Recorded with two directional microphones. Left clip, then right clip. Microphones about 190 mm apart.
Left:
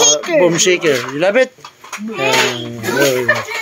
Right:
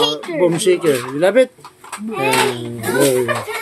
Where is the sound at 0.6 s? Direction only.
10° right (ahead or behind).